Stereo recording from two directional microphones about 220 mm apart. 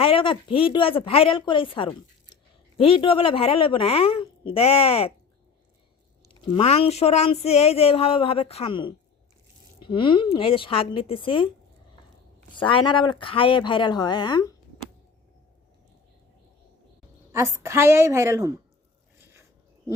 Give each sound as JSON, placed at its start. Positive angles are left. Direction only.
{"t": 0.0, "sound": "speech", "side_deg": 25}
{"t": 6.5, "sound": "speech", "side_deg": 30}
{"t": 12.5, "sound": "speech", "side_deg": 20}
{"t": 17.3, "sound": "a woman's voice", "side_deg": -10}
{"t": 19.2, "sound": "a sound", "side_deg": -10}